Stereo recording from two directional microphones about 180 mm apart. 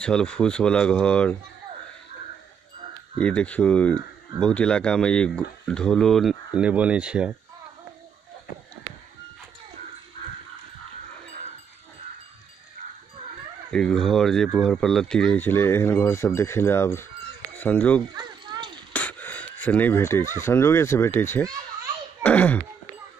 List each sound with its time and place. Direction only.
0.0 s speech: 5° left (ahead or behind)
3.2 s speech: 5° left (ahead or behind)
13.7 s speech: 5° left (ahead or behind)
18.1 s a sound: 25° right (ahead or behind)
18.9 s speech: 10° left (ahead or behind)
22.2 s a sound: 10° left (ahead or behind)